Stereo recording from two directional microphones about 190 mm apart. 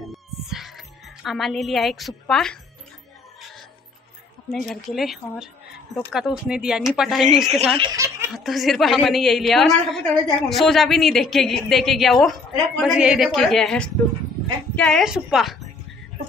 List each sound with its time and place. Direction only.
0.0 s music: centre (ahead or behind)
1.2 s speech: centre (ahead or behind)
4.5 s speech: centre (ahead or behind)
7.7 s speech: 20° right (ahead or behind)
8.5 s speech: centre (ahead or behind)